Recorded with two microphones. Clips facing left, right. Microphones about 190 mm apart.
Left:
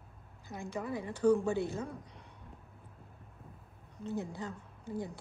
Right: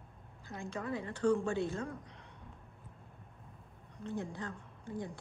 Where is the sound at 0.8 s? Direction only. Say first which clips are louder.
Left 3 dB; 10° left (ahead or behind).